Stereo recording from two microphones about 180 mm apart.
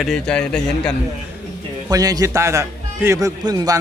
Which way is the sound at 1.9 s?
20° right (ahead or behind).